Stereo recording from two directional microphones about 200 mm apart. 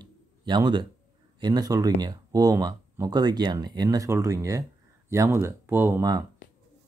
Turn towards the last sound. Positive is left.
turn(degrees=-15)  # may be behind; listen again after turning